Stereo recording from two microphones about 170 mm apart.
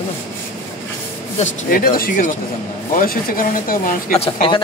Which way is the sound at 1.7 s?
55° left (ahead or behind).